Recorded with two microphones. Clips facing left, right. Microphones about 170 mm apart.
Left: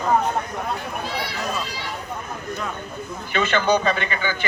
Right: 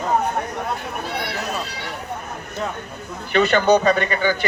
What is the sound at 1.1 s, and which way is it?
Speech, 65° right (ahead or behind).